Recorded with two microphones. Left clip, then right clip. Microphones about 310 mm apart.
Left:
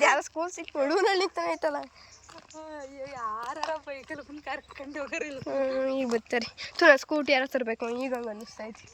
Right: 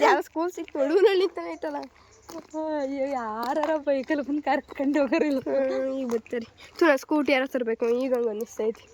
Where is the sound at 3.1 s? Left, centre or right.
Right.